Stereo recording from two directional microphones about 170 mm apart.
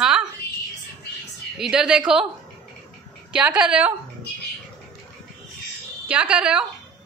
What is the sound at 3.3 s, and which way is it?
Speech, 10° right (ahead or behind).